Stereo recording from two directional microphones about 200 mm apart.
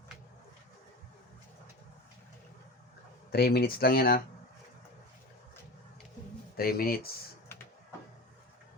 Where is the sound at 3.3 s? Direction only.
50° left (ahead or behind).